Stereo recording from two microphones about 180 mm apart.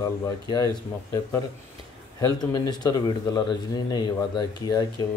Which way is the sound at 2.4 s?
20° left (ahead or behind).